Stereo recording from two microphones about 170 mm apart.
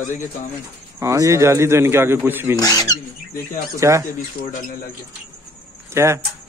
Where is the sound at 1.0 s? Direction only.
20° right (ahead or behind).